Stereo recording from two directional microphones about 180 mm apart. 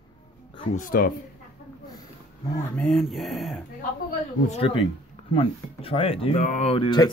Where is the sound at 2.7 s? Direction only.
5° left (ahead or behind).